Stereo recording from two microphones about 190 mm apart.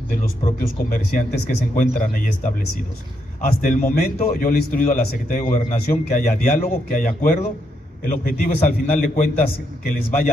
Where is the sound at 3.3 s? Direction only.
45° left (ahead or behind).